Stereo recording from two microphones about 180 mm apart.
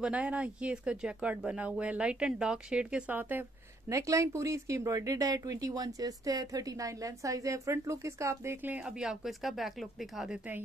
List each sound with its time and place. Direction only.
0.0 s speech: 5° right (ahead or behind)